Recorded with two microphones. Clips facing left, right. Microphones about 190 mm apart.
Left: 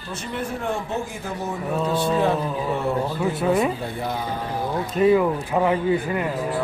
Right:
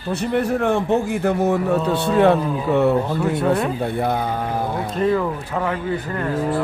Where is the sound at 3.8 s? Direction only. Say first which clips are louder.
Right 6 dB; 60° right (ahead or behind).